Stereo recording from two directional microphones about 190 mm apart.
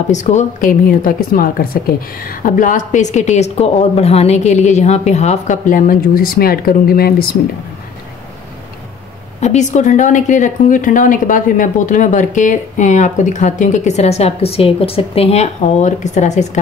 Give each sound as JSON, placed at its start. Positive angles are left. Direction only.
{"t": 0.1, "sound": "a woman's voice", "side_deg": 40}
{"t": 9.4, "sound": "a woman's voice", "side_deg": 35}